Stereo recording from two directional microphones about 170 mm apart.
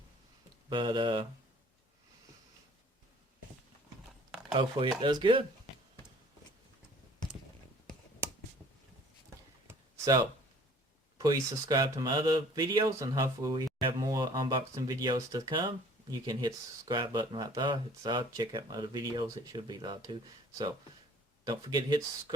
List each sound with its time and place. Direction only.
0.7 s speech: 25° right (ahead or behind)
4.5 s speech: 30° right (ahead or behind)
9.6 s a sound: 20° right (ahead or behind)
11.7 s speech: 25° right (ahead or behind)
21.4 s speech: 25° right (ahead or behind)